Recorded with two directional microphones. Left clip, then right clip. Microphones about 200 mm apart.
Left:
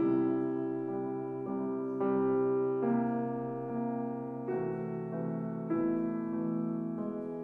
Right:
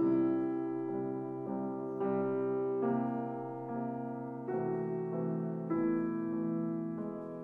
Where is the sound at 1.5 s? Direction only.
25° right (ahead or behind).